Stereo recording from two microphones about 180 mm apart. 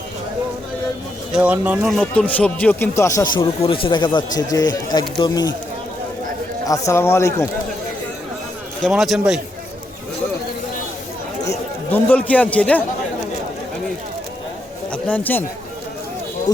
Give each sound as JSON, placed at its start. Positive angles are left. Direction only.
{"t": 1.3, "sound": "speech", "side_deg": -5}
{"t": 6.7, "sound": "speech", "side_deg": 15}
{"t": 8.8, "sound": "a man's voice", "side_deg": 0}
{"t": 11.4, "sound": "a man's voice", "side_deg": 10}
{"t": 14.9, "sound": "speech", "side_deg": 5}